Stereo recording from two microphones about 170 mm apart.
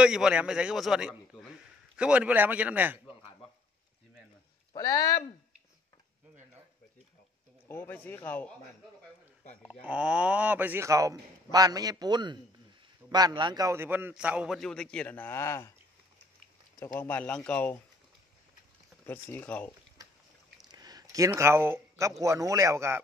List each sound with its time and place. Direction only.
0.0 s a man's voice: 5° right (ahead or behind)
4.7 s speech: 20° left (ahead or behind)
7.6 s speech: 15° left (ahead or behind)
9.7 s a man's voice: 5° right (ahead or behind); by 15.7 s 15° left (ahead or behind)
16.8 s speech: 15° left (ahead or behind)
19.3 s speech: 10° left (ahead or behind)
20.6 s a sound: 25° right (ahead or behind)
22.2 s a man's voice: 20° right (ahead or behind)